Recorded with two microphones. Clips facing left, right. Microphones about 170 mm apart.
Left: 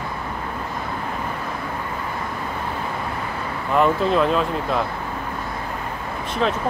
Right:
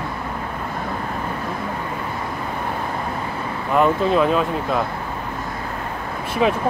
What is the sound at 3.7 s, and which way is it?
Speech, 5° right (ahead or behind).